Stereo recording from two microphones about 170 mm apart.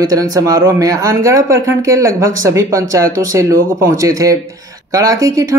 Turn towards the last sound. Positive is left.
turn(degrees=-20)  # may be behind; listen again after turning